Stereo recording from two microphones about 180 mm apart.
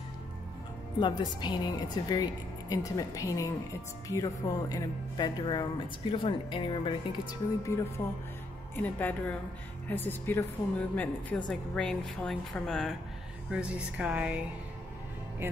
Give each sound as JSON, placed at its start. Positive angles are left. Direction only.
{"t": 0.9, "sound": "speech", "side_deg": 25}
{"t": 8.7, "sound": "a woman's voice", "side_deg": 10}